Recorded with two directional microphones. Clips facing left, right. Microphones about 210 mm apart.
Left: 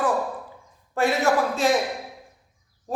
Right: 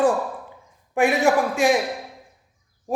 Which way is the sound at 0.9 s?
15° right (ahead or behind).